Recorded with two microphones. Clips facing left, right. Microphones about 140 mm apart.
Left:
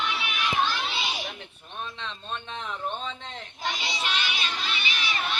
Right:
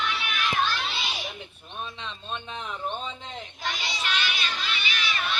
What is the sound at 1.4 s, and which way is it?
A man's voice, 5° right (ahead or behind).